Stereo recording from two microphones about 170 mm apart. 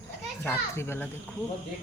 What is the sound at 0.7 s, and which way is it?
Speech, 15° left (ahead or behind).